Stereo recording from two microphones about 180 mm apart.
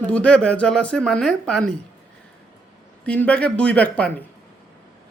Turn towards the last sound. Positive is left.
turn(degrees=5)  # may be behind; listen again after turning